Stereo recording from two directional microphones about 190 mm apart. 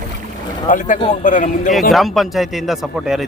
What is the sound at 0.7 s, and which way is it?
Speech, 40° left (ahead or behind).